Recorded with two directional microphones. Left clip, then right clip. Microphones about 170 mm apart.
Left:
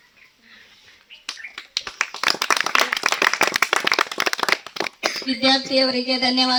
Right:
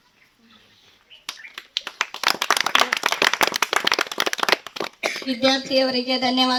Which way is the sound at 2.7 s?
60° left (ahead or behind).